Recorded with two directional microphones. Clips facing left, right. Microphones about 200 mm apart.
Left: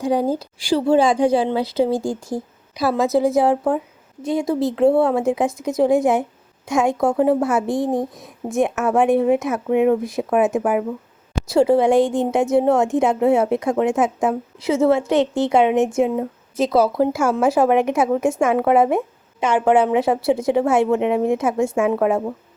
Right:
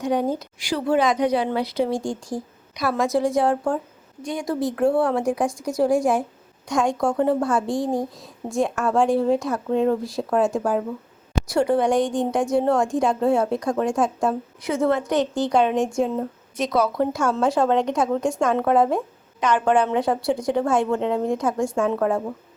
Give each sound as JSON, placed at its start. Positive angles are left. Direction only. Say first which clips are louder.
{"t": 0.0, "sound": "speech", "louder": "left 3 dB", "side_deg": 30}
{"t": 17.0, "sound": "speech", "louder": "left 4 dB", "side_deg": 5}